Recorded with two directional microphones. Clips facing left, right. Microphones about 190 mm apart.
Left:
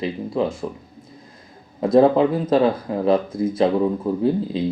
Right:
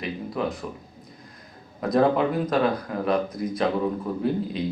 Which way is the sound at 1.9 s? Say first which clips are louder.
Left 6 dB; 30° left (ahead or behind).